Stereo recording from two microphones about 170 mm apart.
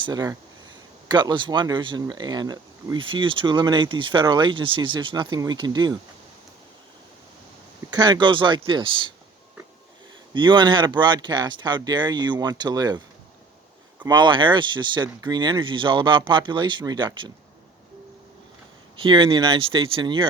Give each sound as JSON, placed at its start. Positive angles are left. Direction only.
{"t": 0.0, "sound": "speech", "side_deg": -20}
{"t": 7.9, "sound": "speech", "side_deg": -25}
{"t": 10.3, "sound": "speech", "side_deg": -30}
{"t": 14.1, "sound": "speech", "side_deg": -25}
{"t": 18.9, "sound": "speech", "side_deg": -30}